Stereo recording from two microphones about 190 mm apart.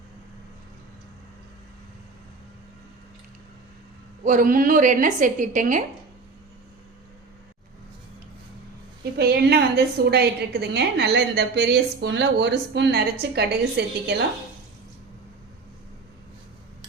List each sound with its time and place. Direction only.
4.2 s a woman's voice: 45° right (ahead or behind)
9.1 s a woman's voice: 55° right (ahead or behind)